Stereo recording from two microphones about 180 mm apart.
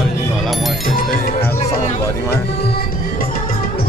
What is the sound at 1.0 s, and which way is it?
Music, 55° left (ahead or behind).